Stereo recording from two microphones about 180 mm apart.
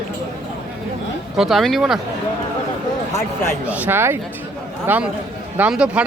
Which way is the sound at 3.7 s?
10° right (ahead or behind).